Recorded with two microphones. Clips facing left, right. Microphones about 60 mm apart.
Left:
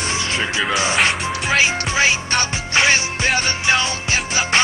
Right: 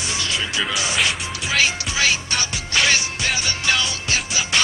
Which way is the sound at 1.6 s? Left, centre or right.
Left.